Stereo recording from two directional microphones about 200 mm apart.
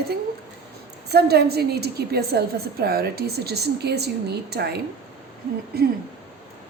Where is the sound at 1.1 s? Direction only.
55° right (ahead or behind).